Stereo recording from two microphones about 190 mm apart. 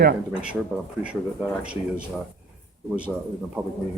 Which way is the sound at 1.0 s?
5° right (ahead or behind).